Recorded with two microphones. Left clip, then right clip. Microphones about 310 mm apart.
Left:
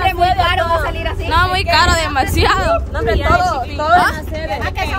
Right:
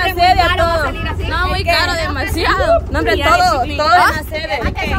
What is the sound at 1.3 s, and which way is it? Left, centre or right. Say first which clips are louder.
A woman's voice: left 3 dB; centre.